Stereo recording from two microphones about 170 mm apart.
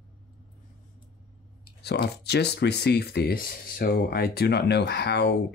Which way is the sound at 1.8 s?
75° left (ahead or behind).